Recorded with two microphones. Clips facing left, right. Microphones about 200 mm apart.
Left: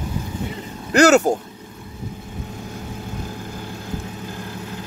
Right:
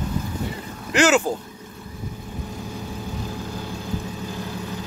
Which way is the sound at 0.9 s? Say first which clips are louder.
Left 5 dB; 40° left (ahead or behind).